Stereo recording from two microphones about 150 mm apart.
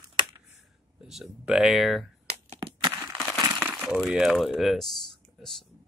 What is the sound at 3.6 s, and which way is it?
Speech, 10° right (ahead or behind).